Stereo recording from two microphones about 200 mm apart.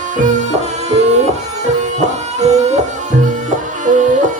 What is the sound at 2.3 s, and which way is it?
Music, 35° right (ahead or behind).